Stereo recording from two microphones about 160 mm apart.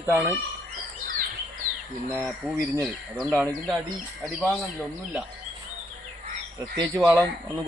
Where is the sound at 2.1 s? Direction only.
15° right (ahead or behind).